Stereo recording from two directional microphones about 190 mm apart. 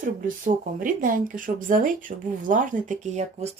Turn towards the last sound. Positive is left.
turn(degrees=-35)  # may be behind; listen again after turning